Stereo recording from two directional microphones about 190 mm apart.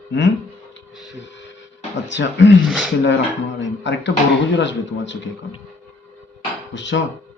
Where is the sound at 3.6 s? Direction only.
70° left (ahead or behind).